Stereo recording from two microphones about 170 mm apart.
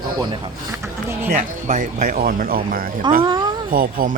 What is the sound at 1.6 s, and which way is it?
A man's voice, 50° right (ahead or behind).